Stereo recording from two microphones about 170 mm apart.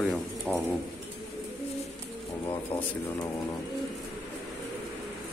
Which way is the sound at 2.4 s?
15° left (ahead or behind).